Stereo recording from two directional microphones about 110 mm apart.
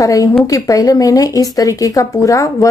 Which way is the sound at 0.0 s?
30° left (ahead or behind).